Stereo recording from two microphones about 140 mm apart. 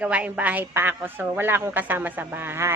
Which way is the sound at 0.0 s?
10° right (ahead or behind).